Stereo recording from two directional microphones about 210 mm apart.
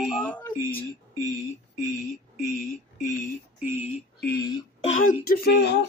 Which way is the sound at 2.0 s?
Centre (ahead or behind).